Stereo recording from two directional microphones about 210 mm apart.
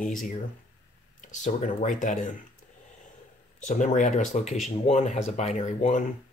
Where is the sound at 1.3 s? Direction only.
35° left (ahead or behind).